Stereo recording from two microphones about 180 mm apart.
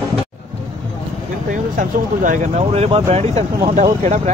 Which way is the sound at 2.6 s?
35° right (ahead or behind).